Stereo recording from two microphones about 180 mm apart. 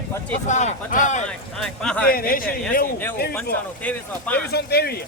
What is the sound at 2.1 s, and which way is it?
Speech, 55° left (ahead or behind).